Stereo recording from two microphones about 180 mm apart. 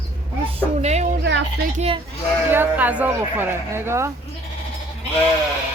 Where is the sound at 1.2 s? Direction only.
75° right (ahead or behind).